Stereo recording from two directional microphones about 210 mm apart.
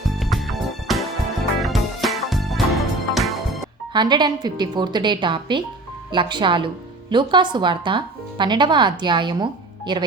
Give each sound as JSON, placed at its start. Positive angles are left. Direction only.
{"t": 0.1, "sound": "music", "side_deg": 0}
{"t": 3.9, "sound": "speech", "side_deg": -20}